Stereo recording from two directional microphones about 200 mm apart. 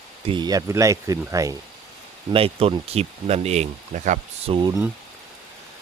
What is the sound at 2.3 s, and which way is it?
Speech, 30° right (ahead or behind).